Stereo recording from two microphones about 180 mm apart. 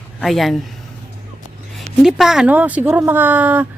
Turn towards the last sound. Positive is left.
turn(degrees=-10)  # may be behind; listen again after turning